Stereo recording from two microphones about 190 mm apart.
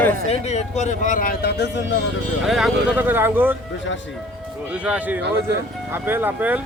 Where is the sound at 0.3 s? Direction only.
35° left (ahead or behind); by 1.8 s 60° left (ahead or behind).